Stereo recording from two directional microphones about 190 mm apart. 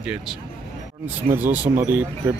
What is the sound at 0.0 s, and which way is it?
Speech, 5° right (ahead or behind).